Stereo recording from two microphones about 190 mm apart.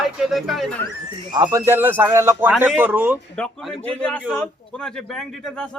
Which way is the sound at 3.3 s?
5° left (ahead or behind).